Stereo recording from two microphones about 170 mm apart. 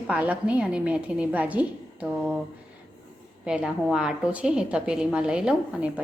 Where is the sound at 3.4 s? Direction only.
5° right (ahead or behind).